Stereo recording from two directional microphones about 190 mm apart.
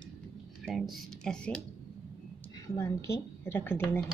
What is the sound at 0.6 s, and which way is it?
Speech, centre (ahead or behind).